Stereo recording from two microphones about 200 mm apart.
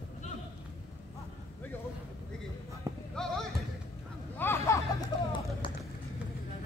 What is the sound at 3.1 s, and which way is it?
Basketball bounce, centre (ahead or behind).